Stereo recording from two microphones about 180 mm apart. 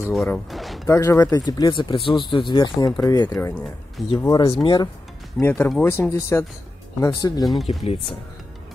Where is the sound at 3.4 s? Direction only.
10° left (ahead or behind).